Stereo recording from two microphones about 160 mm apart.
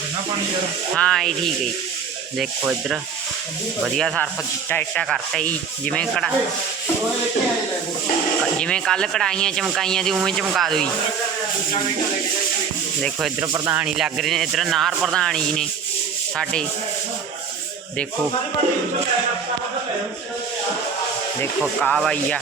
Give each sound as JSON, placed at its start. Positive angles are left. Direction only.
{"t": 0.9, "sound": "speech", "side_deg": 5}
{"t": 3.9, "sound": "speech", "side_deg": 5}
{"t": 8.5, "sound": "speech", "side_deg": 5}
{"t": 13.4, "sound": "speech", "side_deg": -20}
{"t": 13.7, "sound": "speech", "side_deg": -5}
{"t": 21.8, "sound": "speech", "side_deg": 5}